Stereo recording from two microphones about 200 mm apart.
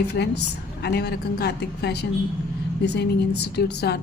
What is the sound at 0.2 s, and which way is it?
A woman's voice, 60° left (ahead or behind).